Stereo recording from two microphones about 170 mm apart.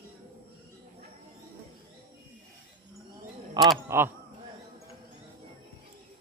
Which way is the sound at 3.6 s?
25° right (ahead or behind).